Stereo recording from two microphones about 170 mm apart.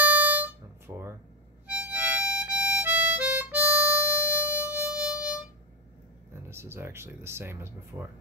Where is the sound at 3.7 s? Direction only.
20° left (ahead or behind).